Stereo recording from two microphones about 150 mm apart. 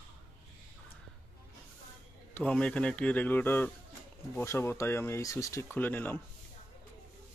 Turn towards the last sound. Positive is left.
turn(degrees=10)  # may be behind; listen again after turning